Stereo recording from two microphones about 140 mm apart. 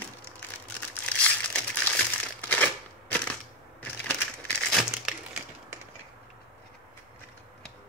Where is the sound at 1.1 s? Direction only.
10° left (ahead or behind).